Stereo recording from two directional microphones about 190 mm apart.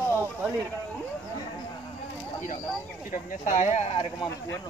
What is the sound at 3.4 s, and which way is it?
Speech, 40° left (ahead or behind).